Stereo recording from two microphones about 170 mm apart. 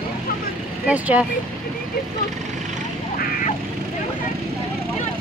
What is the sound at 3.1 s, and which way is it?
Vehicle, 60° left (ahead or behind).